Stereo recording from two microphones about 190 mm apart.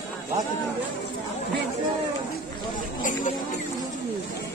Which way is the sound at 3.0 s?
45° left (ahead or behind).